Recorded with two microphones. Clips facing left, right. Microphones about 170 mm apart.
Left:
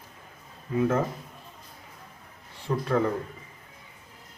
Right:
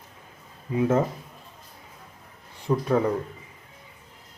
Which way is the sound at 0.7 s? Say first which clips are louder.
Right 2 dB; 20° right (ahead or behind).